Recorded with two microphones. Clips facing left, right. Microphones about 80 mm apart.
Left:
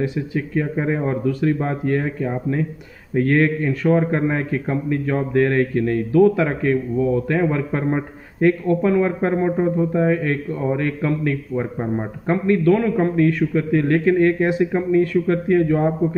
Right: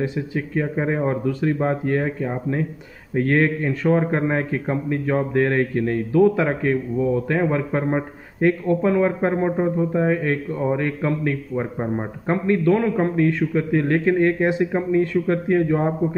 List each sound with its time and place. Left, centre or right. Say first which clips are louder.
0.0 s a man's voice: left 2 dB; right